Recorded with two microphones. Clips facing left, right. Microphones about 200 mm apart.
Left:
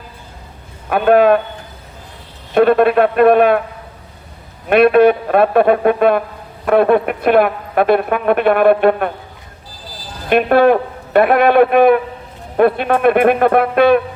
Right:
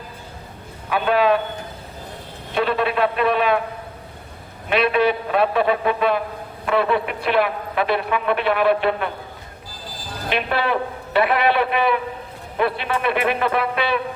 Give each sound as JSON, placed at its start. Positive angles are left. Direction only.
{"t": 0.9, "sound": "speech", "side_deg": 50}
{"t": 2.6, "sound": "speech", "side_deg": 50}
{"t": 4.7, "sound": "speech", "side_deg": 50}
{"t": 10.2, "sound": "speech", "side_deg": 50}